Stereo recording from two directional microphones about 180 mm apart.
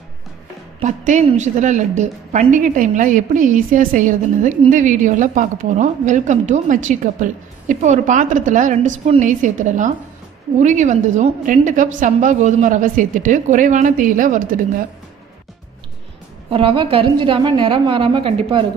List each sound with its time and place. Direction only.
0.8 s a woman's voice: 40° right (ahead or behind)
16.4 s a woman's voice: 30° right (ahead or behind)